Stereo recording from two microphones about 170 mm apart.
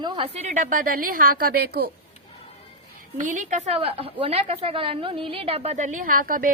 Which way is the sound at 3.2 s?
50° right (ahead or behind).